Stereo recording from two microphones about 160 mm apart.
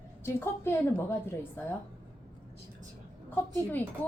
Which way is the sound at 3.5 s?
10° left (ahead or behind).